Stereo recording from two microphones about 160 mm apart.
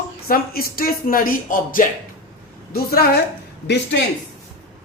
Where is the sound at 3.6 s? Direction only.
90° left.